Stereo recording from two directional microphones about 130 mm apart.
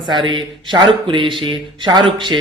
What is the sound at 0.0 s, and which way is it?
Speech, 40° right (ahead or behind).